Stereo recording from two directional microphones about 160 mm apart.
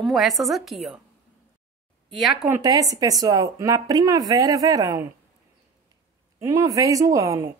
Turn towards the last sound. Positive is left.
turn(degrees=-20)  # may be behind; listen again after turning